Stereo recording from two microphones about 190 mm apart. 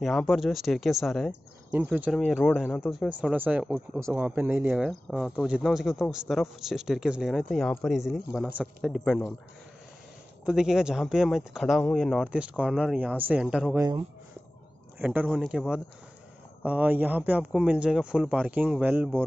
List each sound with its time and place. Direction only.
0.0 s speech: centre (ahead or behind)
1.7 s speech: 10° right (ahead or behind)
10.4 s speech: 5° right (ahead or behind)
13.7 s speech: 20° right (ahead or behind)
15.0 s a man's voice: 5° right (ahead or behind)